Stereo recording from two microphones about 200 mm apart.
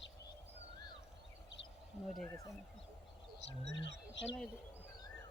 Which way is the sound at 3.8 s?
65° left (ahead or behind).